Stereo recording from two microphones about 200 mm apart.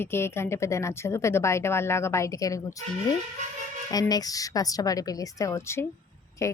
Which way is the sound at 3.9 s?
20° left (ahead or behind).